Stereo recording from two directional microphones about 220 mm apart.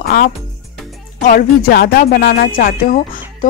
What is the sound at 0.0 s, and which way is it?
Music, 45° left (ahead or behind).